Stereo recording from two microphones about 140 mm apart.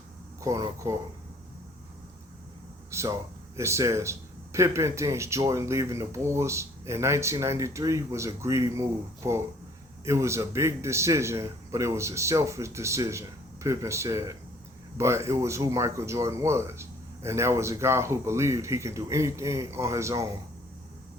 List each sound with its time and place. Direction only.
0.4 s speech: 25° right (ahead or behind)
2.9 s speech: 20° right (ahead or behind)